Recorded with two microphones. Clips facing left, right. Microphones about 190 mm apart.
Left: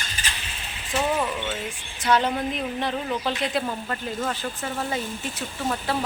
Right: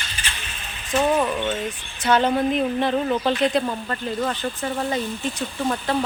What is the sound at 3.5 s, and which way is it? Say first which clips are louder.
Speech: right 4 dB; 10° left (ahead or behind).